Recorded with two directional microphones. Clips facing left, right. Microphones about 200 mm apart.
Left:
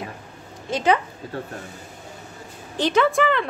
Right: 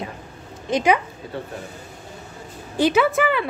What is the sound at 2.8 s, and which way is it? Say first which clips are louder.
Speech: right 1 dB; 10° right (ahead or behind).